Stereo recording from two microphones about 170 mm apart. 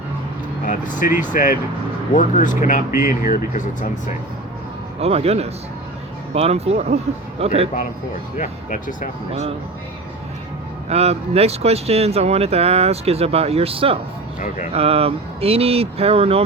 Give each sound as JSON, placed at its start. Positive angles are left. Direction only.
{"t": 0.7, "sound": "speech", "side_deg": 50}
{"t": 4.9, "sound": "speech", "side_deg": -35}
{"t": 8.4, "sound": "speech", "side_deg": 50}
{"t": 9.3, "sound": "speech", "side_deg": -35}
{"t": 10.8, "sound": "speech", "side_deg": -40}